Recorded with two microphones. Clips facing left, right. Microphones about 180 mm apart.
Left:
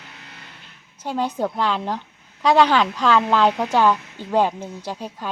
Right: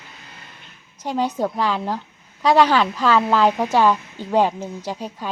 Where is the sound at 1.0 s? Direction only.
10° right (ahead or behind).